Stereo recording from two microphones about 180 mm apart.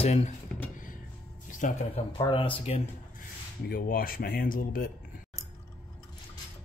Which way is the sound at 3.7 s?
55° left (ahead or behind).